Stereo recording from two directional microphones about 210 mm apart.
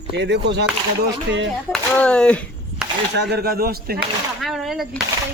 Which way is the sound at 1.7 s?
5° left (ahead or behind).